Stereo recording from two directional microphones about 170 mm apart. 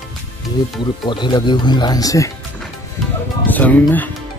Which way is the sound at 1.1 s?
25° left (ahead or behind).